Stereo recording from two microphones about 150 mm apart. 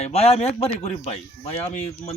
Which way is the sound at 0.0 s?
45° left (ahead or behind).